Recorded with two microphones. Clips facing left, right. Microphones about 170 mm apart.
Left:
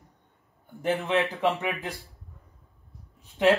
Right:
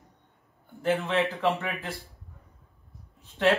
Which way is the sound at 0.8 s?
15° left (ahead or behind).